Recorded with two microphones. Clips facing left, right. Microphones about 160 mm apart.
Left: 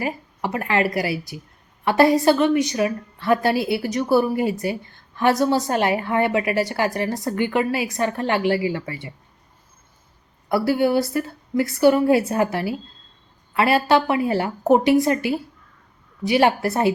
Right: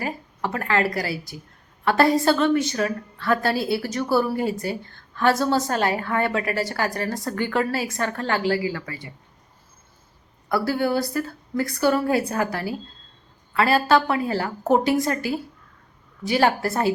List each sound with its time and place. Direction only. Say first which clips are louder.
0.0 s a woman's voice: left 2 dB; 20° left (ahead or behind)
1.1 s a woman's voice: left 4 dB; centre (ahead or behind)
1.9 s a woman's voice: left 3 dB; 20° left (ahead or behind)
4.4 s a woman's voice: left 2 dB; 5° left (ahead or behind)
5.1 s a woman's voice: left 2 dB; 20° left (ahead or behind)
10.5 s a woman's voice: left 4 dB; 20° left (ahead or behind)
16.2 s a woman's voice: left 3 dB; 20° left (ahead or behind)